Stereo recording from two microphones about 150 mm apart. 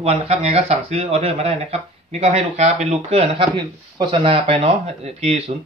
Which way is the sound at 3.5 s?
35° right (ahead or behind).